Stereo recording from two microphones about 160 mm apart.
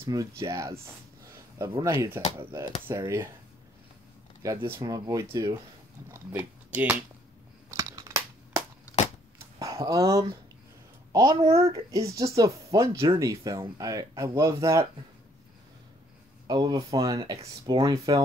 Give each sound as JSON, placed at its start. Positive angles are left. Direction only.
{"t": 0.0, "sound": "speech", "side_deg": -20}
{"t": 4.4, "sound": "speech", "side_deg": -15}
{"t": 7.7, "sound": "a sound", "side_deg": -20}
{"t": 11.1, "sound": "speech", "side_deg": -25}
{"t": 16.4, "sound": "speech", "side_deg": -25}